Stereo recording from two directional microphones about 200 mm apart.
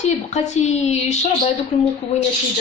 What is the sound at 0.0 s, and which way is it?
A woman's voice, 35° left (ahead or behind).